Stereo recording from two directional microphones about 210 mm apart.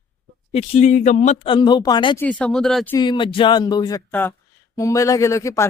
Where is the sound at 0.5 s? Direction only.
30° left (ahead or behind).